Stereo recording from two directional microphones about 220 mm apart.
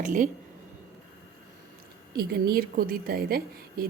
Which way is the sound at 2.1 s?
45° right (ahead or behind).